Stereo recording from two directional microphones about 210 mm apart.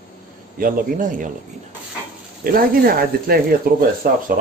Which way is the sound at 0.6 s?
40° right (ahead or behind).